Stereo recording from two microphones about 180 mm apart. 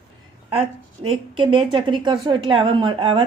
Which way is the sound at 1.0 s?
30° right (ahead or behind).